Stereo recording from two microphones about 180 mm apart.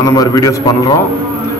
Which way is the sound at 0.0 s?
20° left (ahead or behind).